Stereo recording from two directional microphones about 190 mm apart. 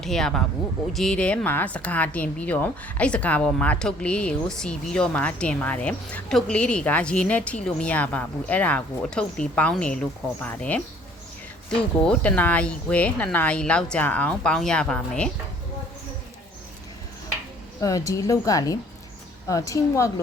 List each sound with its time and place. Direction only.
0.0 s speech: centre (ahead or behind)
17.7 s speech: 15° left (ahead or behind)